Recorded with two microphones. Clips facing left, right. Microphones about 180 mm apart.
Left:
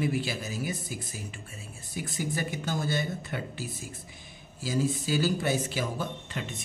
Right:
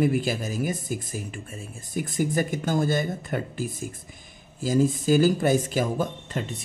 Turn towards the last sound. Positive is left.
turn(degrees=-45)  # may be behind; listen again after turning